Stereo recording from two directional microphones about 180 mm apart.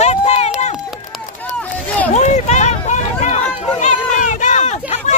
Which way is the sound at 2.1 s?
40° left (ahead or behind).